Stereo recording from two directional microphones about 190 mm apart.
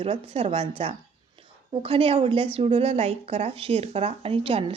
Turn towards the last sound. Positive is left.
turn(degrees=-30)  # may be behind; listen again after turning